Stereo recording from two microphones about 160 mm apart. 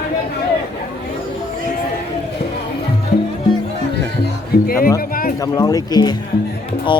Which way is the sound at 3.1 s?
90° left.